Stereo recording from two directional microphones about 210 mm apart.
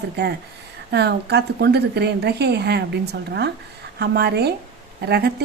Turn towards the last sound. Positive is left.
turn(degrees=-50)  # may be behind; listen again after turning